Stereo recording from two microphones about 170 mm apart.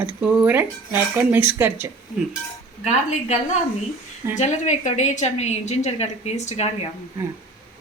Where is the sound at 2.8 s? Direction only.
40° left (ahead or behind).